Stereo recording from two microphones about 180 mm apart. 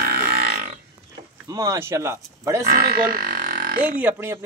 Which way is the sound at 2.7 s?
55° right (ahead or behind).